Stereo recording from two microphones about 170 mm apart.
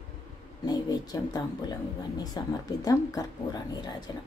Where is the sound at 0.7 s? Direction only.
20° left (ahead or behind).